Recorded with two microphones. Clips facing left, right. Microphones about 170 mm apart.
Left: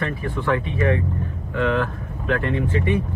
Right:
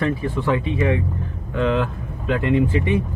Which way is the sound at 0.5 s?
15° right (ahead or behind).